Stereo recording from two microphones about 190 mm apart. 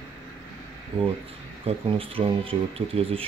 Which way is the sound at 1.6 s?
30° right (ahead or behind).